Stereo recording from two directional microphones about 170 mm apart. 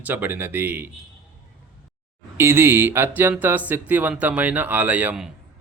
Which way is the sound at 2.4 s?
15° right (ahead or behind).